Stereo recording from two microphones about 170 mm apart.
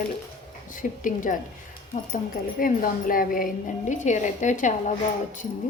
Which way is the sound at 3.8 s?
45° left (ahead or behind).